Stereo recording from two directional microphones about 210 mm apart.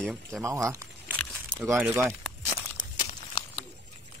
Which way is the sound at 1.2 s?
5° left (ahead or behind).